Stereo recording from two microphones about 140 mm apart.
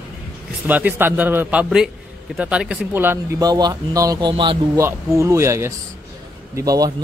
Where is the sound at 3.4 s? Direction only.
30° right (ahead or behind).